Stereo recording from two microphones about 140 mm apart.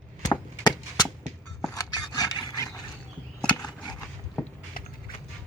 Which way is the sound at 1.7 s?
30° left (ahead or behind).